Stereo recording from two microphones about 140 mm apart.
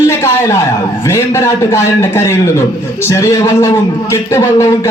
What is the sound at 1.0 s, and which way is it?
A man's voice, 20° left (ahead or behind).